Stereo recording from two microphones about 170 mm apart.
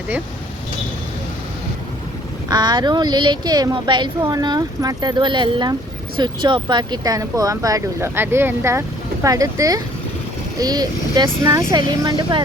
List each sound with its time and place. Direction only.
2.5 s a woman's voice: 25° right (ahead or behind)